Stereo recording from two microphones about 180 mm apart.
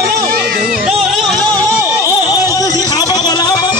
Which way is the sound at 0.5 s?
55° right (ahead or behind).